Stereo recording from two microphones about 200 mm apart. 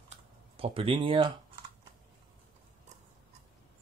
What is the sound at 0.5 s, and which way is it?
Speech, 25° right (ahead or behind).